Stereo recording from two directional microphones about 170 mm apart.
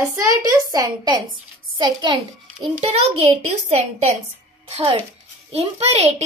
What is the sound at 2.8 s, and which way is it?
Speech, 40° right (ahead or behind).